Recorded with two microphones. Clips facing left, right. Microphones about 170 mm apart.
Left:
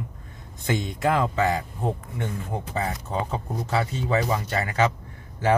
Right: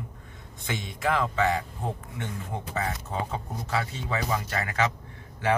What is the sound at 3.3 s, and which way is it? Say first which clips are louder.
Speech: left 6 dB; 30° left (ahead or behind).